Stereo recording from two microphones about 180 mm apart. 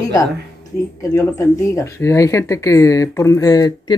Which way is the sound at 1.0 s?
15° left (ahead or behind).